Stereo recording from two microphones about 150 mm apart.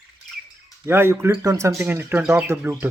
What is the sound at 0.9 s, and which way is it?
Speech, 15° right (ahead or behind).